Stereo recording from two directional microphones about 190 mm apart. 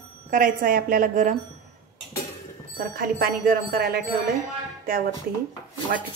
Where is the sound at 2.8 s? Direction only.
50° right (ahead or behind).